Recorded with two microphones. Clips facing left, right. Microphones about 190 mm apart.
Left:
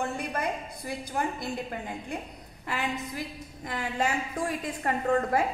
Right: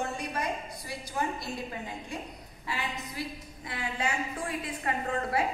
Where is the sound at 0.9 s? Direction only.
55° left (ahead or behind).